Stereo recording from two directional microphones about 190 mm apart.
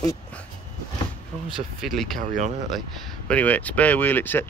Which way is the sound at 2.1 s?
40° right (ahead or behind).